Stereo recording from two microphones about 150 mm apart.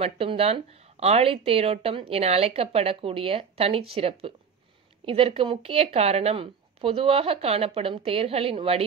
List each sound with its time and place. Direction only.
0.0 s speech: 40° right (ahead or behind)